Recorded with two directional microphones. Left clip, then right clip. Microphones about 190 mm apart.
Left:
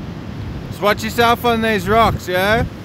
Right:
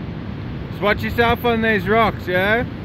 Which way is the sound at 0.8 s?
20° left (ahead or behind).